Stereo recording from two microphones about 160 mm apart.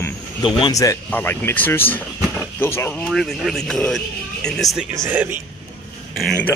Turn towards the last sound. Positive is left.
turn(degrees=5)  # may be behind; listen again after turning